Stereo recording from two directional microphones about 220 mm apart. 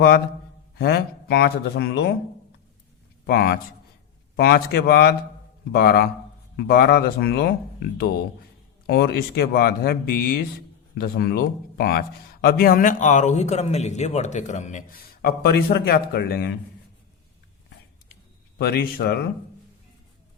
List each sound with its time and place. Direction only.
0.8 s speech: 45° left (ahead or behind)
3.2 s speech: 45° left (ahead or behind)
18.5 s speech: 45° left (ahead or behind)